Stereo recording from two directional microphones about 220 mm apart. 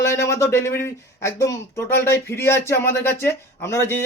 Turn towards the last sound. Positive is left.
turn(degrees=10)  # may be behind; listen again after turning